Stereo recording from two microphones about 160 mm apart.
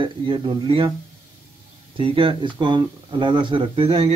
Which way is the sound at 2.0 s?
35° right (ahead or behind).